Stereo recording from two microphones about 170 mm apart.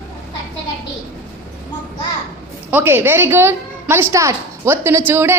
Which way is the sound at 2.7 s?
10° right (ahead or behind).